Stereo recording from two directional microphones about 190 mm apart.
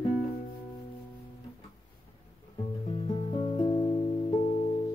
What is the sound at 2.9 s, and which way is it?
Music, 30° left (ahead or behind).